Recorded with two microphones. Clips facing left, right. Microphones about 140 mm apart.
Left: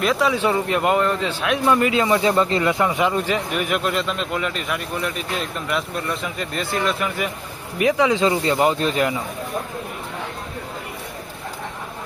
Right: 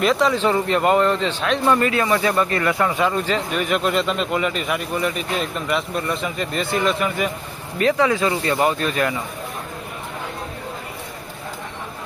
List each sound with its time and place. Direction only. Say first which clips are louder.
0.0 s a man's voice: right 1 dB; 5° left (ahead or behind)
7.8 s speech: even; 15° left (ahead or behind)